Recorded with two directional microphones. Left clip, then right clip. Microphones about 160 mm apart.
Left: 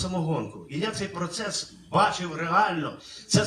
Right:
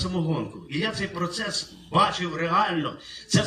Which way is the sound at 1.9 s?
35° left (ahead or behind).